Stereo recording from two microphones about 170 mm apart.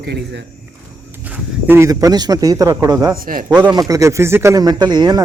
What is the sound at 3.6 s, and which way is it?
Speech, 20° right (ahead or behind).